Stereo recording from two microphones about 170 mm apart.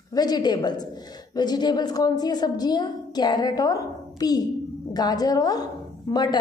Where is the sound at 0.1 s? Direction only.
25° left (ahead or behind).